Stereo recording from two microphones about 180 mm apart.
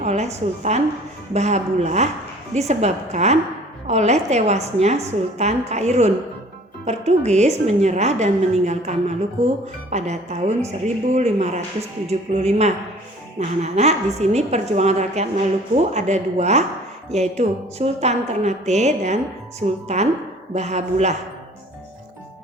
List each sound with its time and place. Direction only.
0.0 s a woman's voice: 40° right (ahead or behind)